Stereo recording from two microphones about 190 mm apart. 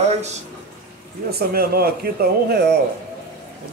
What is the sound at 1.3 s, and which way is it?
Speech, 55° right (ahead or behind).